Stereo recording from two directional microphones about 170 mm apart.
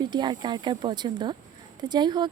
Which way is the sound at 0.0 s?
25° right (ahead or behind).